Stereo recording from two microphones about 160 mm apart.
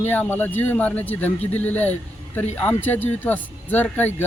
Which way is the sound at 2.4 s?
45° left (ahead or behind).